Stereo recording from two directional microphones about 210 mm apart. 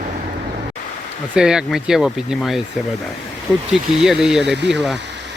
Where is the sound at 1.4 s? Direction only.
5° right (ahead or behind).